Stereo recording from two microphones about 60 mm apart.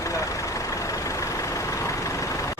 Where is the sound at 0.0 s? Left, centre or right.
Left.